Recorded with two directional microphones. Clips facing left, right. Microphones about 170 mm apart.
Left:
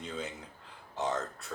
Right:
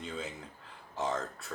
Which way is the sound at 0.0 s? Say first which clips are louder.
Left 1 dB; centre (ahead or behind).